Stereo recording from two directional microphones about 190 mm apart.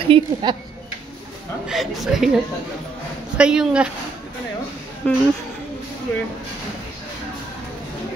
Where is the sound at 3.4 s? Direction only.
5° right (ahead or behind).